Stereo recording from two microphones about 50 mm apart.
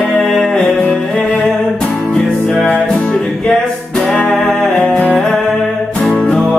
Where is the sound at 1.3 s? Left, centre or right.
Centre.